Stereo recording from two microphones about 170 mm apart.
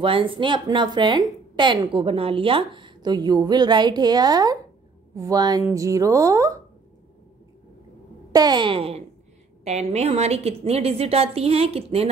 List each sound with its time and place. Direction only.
0.0 s a woman's voice: 30° right (ahead or behind)
8.3 s a woman's voice: 25° right (ahead or behind)